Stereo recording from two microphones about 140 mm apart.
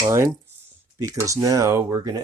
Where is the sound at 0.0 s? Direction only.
20° right (ahead or behind).